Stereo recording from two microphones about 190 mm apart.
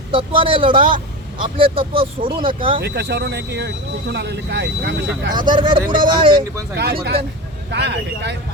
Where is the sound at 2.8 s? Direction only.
60° right (ahead or behind).